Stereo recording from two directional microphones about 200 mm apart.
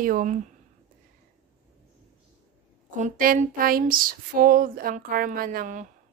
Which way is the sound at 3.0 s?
40° right (ahead or behind).